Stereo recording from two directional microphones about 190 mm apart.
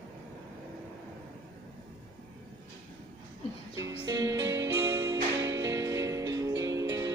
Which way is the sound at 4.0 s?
20° right (ahead or behind).